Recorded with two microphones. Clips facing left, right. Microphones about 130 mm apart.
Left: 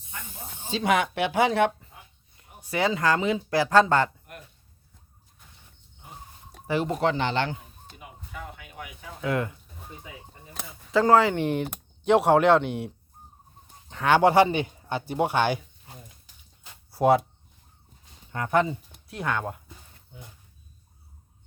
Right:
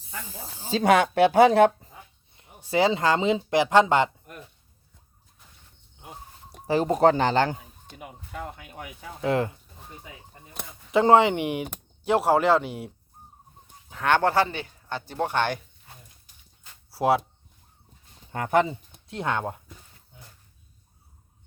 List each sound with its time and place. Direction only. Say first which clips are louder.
0.6 s speech: right 4 dB; 40° right (ahead or behind)
2.3 s speech: right 5 dB; 25° right (ahead or behind)
6.7 s speech: right 5 dB; 35° right (ahead or behind)
10.9 s speech: right 2 dB; 20° right (ahead or behind)
12.0 s speech: left 2 dB; centre (ahead or behind)
14.2 s speech: left 4 dB; 15° left (ahead or behind)
16.9 s speech: left 2 dB; centre (ahead or behind)
18.3 s speech: right 1 dB; 25° right (ahead or behind)